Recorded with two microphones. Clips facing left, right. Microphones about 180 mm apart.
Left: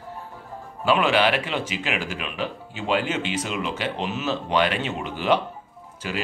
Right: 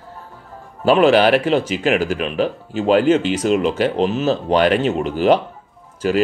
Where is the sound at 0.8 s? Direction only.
40° right (ahead or behind).